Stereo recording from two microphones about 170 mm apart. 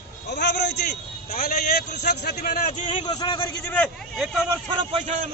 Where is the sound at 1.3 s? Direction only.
65° left (ahead or behind).